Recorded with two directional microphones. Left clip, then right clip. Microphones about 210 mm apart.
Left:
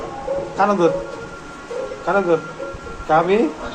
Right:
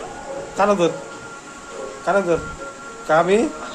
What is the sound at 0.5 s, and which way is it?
Speech, 45° right (ahead or behind).